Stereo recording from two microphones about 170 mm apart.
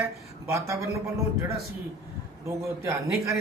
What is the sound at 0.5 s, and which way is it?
Speech, 15° right (ahead or behind).